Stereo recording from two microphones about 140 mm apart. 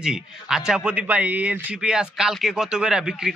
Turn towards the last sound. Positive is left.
turn(degrees=-5)  # may be behind; listen again after turning